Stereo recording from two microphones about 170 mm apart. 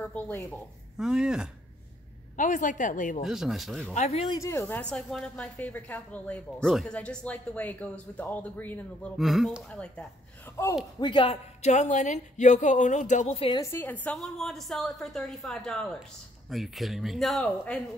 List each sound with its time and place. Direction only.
0.0 s speech: 10° left (ahead or behind)
0.9 s a woman's voice: 5° right (ahead or behind)
2.3 s a woman's voice: 50° left (ahead or behind)
3.3 s a woman's voice: centre (ahead or behind)
3.9 s speech: 40° left (ahead or behind)
4.3 s a woman's voice: 20° left (ahead or behind)
9.1 s a woman's voice: centre (ahead or behind); by 10.7 s 15° left (ahead or behind)
11.0 s a woman's voice: 30° left (ahead or behind)
13.6 s a woman's voice: 15° left (ahead or behind)